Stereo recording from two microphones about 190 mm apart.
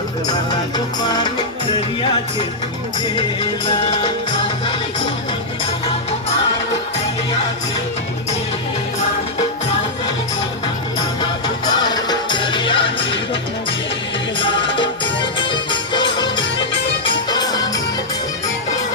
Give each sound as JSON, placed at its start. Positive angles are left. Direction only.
{"t": 1.0, "sound": "music", "side_deg": 20}
{"t": 11.2, "sound": "music", "side_deg": 20}
{"t": 14.3, "sound": "music", "side_deg": 25}
{"t": 16.4, "sound": "music", "side_deg": 70}
{"t": 17.2, "sound": "music", "side_deg": 20}